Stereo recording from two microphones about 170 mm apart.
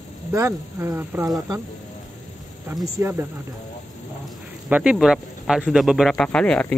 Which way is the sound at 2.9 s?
15° right (ahead or behind).